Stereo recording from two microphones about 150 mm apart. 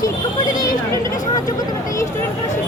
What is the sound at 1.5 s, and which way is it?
Vehicle, 20° left (ahead or behind).